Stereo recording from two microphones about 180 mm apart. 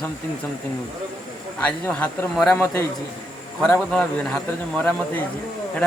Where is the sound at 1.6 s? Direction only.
5° left (ahead or behind).